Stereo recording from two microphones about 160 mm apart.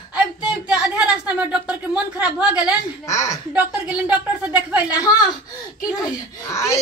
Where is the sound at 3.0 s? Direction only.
20° left (ahead or behind).